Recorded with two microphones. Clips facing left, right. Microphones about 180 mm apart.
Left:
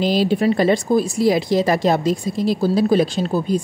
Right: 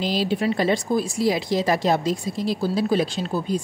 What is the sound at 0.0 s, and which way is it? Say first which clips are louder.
Speech: left 6 dB; 50° left (ahead or behind).